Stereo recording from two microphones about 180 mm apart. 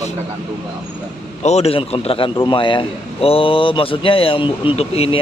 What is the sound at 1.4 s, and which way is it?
A man's voice, 35° left (ahead or behind).